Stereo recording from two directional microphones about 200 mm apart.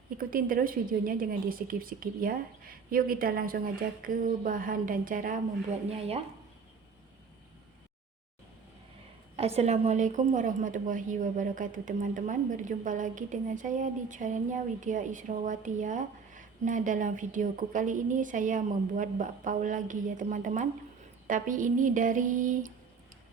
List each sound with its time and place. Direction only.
0.2 s a woman's voice: 45° right (ahead or behind)
9.3 s a woman's voice: 30° right (ahead or behind)